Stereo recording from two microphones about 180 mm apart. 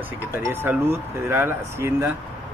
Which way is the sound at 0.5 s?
10° right (ahead or behind).